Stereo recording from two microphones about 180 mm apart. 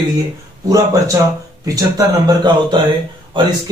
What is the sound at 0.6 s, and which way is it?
Speech, 20° right (ahead or behind).